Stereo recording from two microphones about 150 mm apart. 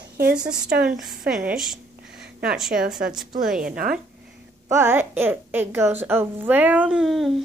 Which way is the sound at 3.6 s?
70° right (ahead or behind).